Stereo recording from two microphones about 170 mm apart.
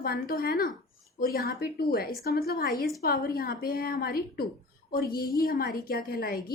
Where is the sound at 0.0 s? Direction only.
60° left (ahead or behind).